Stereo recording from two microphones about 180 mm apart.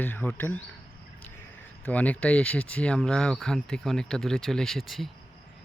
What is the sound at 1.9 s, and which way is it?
Speech, 10° left (ahead or behind).